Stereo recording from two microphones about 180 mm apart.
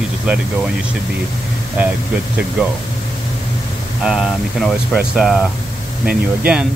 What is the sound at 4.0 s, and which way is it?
Speech, 5° right (ahead or behind).